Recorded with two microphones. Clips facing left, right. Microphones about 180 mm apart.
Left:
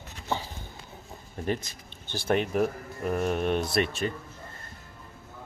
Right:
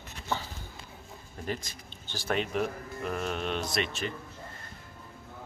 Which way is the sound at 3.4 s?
50° left (ahead or behind).